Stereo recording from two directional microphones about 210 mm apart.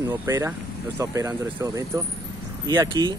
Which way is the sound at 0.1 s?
10° right (ahead or behind).